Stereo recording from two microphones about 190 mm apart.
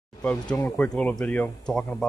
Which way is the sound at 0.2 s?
5° left (ahead or behind).